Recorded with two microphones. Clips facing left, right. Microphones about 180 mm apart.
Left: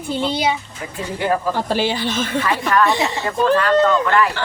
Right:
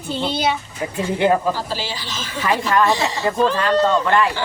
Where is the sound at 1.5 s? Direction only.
55° left (ahead or behind).